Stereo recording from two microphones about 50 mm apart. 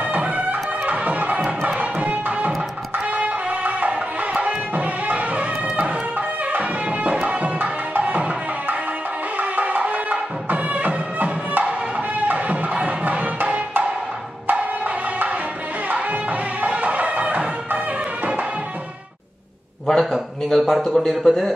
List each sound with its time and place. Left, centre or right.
0.1 s music: right
1.6 s tabla: right
3.2 s music: right
12.7 s music: right
16.6 s music: right
19.9 s a sound: centre